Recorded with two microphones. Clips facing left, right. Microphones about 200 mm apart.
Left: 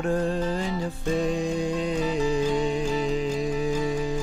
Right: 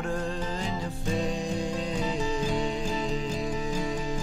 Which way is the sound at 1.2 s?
55° left (ahead or behind).